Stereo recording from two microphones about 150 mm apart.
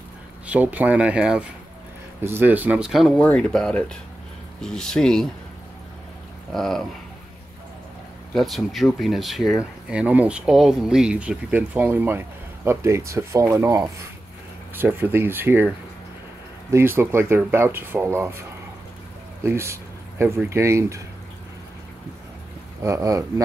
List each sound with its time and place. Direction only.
0.5 s speech: 10° right (ahead or behind)
6.5 s speech: centre (ahead or behind)
8.4 s speech: centre (ahead or behind)
16.7 s speech: 15° right (ahead or behind)
19.4 s a sound: 20° right (ahead or behind)
20.4 s speech: 20° right (ahead or behind)
22.8 s speech: 20° right (ahead or behind)